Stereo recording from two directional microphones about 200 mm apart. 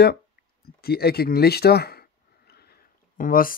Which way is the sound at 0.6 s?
50° left (ahead or behind).